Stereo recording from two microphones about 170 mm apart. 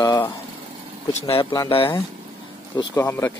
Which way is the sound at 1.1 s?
35° left (ahead or behind).